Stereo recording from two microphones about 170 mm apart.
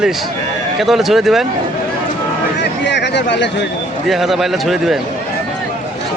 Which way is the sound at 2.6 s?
90° left.